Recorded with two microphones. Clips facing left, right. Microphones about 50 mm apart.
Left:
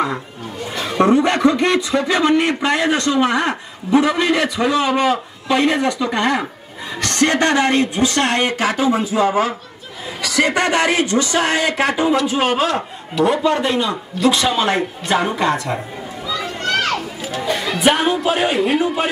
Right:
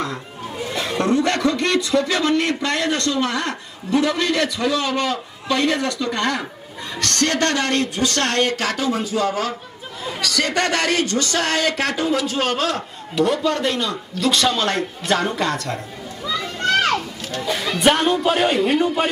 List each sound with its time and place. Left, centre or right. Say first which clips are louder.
0.9 s speech: left 5 dB; centre
16.6 s children playing: right 2 dB; centre
17.2 s speech: left 3 dB; centre